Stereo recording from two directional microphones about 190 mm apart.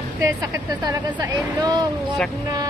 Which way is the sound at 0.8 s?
20° right (ahead or behind).